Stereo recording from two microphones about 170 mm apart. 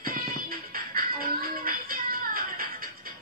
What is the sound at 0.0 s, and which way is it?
Music, 60° right (ahead or behind).